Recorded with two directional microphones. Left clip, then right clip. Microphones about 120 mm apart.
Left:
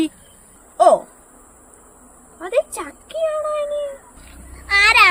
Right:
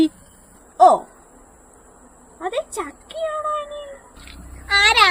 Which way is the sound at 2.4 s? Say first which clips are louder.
Left 4 dB; 10° left (ahead or behind).